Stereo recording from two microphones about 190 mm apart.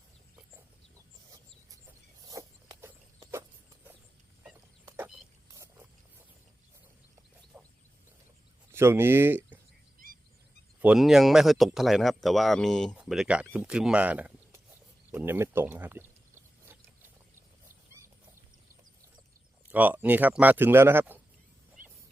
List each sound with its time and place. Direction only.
2.2 s zipper: 20° right (ahead or behind)
4.5 s a sound: 10° right (ahead or behind)
7.5 s a sound: 5° right (ahead or behind)
8.7 s speech: 10° right (ahead or behind)
10.8 s speech: 5° right (ahead or behind)
19.6 s speech: 10° right (ahead or behind)
21.8 s wild animals: 45° right (ahead or behind)